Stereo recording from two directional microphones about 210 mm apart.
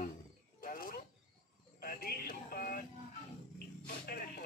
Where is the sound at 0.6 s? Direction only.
40° left (ahead or behind).